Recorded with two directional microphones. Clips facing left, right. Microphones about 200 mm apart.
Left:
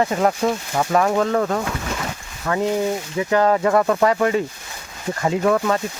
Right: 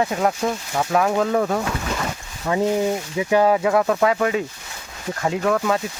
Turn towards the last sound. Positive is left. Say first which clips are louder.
# left 2 dB
turn(degrees=0)  # may be behind; listen again after turning